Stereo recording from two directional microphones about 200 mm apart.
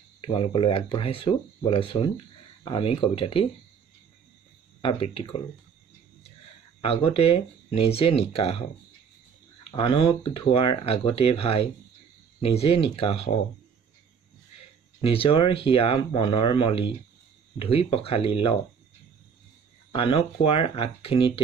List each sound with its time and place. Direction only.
0.2 s speech: 25° left (ahead or behind)
4.8 s speech: 25° left (ahead or behind)
6.8 s speech: 30° left (ahead or behind)
9.7 s speech: 25° left (ahead or behind)
15.0 s speech: 25° left (ahead or behind)
19.9 s speech: 25° left (ahead or behind)